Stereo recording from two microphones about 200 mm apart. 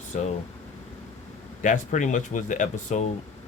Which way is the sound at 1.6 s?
40° left (ahead or behind).